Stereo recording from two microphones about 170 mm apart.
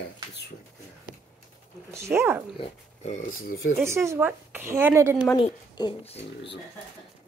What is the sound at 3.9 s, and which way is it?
Speech, 15° right (ahead or behind).